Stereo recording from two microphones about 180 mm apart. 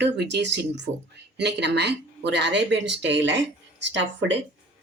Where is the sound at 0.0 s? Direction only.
70° right (ahead or behind); by 4.4 s 85° right.